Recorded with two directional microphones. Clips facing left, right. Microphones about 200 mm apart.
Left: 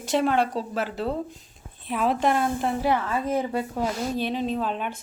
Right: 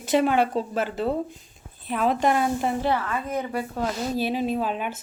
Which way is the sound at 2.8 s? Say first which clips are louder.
Left 1 dB; 15° left (ahead or behind).